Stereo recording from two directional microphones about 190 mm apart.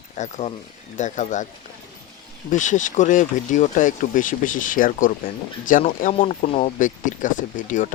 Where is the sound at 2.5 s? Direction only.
40° left (ahead or behind).